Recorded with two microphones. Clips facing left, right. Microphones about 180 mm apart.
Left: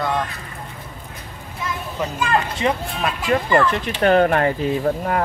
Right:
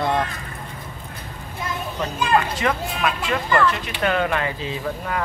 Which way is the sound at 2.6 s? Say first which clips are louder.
Left 2 dB; 25° left (ahead or behind).